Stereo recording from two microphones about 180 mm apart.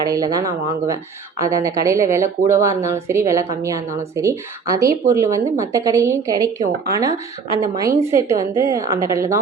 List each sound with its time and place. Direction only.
0.0 s speech: 20° right (ahead or behind)